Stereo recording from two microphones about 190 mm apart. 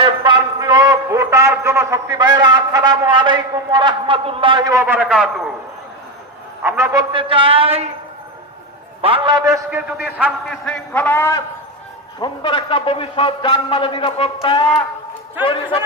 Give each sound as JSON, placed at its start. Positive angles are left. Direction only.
{"t": 0.2, "sound": "a man's voice", "side_deg": -20}
{"t": 6.6, "sound": "a man's voice", "side_deg": -10}
{"t": 7.1, "sound": "a man's voice", "side_deg": -30}
{"t": 9.0, "sound": "a man's voice", "side_deg": -30}
{"t": 9.6, "sound": "a man's voice", "side_deg": -10}
{"t": 12.2, "sound": "a man's voice", "side_deg": 25}